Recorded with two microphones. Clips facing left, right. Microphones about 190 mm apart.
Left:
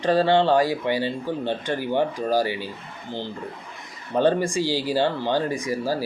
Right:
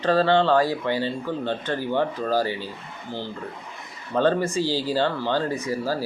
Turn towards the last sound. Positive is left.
turn(degrees=15)  # may be behind; listen again after turning